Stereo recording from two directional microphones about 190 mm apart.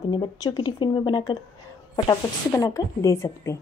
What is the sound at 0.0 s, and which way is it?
A woman's voice, 20° left (ahead or behind).